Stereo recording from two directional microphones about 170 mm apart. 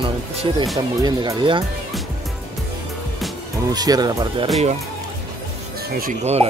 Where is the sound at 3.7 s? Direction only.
25° right (ahead or behind).